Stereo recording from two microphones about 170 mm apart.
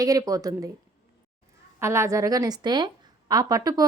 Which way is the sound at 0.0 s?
20° right (ahead or behind).